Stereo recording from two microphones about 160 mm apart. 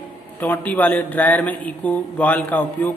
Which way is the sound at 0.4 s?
10° left (ahead or behind).